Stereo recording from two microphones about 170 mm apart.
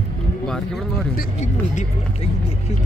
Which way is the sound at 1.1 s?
45° left (ahead or behind).